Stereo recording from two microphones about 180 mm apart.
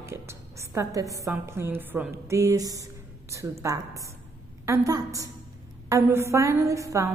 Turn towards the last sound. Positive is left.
turn(degrees=-15)  # may be behind; listen again after turning